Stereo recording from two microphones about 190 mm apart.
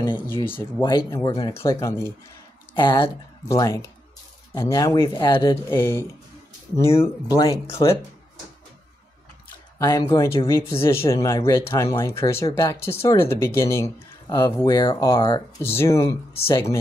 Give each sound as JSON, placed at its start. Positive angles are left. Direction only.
{"t": 0.3, "sound": "speech", "side_deg": 10}
{"t": 2.7, "sound": "speech", "side_deg": 25}
{"t": 7.2, "sound": "speech", "side_deg": 20}
{"t": 9.8, "sound": "speech", "side_deg": 20}
{"t": 15.6, "sound": "speech", "side_deg": 10}